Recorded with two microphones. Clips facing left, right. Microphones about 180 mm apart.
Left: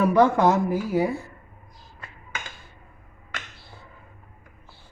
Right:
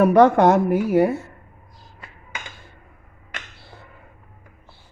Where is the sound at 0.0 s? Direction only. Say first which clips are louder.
Right 5 dB; 65° right (ahead or behind).